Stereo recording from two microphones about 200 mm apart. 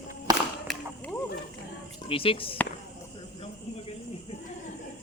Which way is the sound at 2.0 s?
25° left (ahead or behind).